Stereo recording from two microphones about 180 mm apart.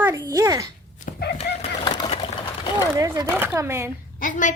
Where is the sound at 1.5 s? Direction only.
70° left (ahead or behind).